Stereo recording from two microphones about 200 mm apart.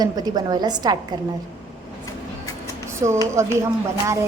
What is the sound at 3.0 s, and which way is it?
Speech, 15° right (ahead or behind).